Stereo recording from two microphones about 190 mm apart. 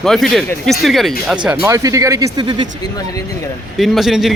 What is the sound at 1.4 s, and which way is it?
Speech, 10° right (ahead or behind).